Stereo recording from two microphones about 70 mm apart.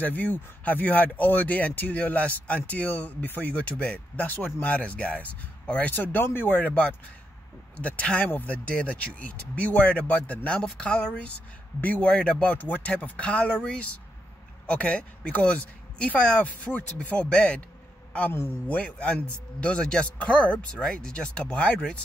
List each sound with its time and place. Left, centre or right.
0.0 s speech: left
12.1 s speech: centre
18.7 s speech: centre